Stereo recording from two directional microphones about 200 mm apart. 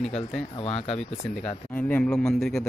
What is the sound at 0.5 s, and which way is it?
Speech, 30° left (ahead or behind).